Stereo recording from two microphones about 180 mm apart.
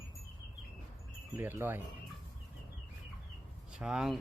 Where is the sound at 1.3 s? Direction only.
15° right (ahead or behind).